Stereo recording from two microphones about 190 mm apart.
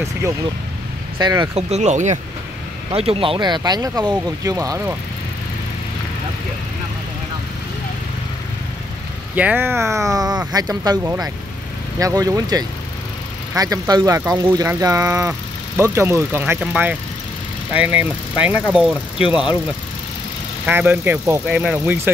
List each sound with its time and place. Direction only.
1.1 s speech: 20° right (ahead or behind)
1.7 s speech: 35° right (ahead or behind); by 4.9 s 15° right (ahead or behind)
9.3 s speech: 10° right (ahead or behind)
20.6 s speech: 10° right (ahead or behind)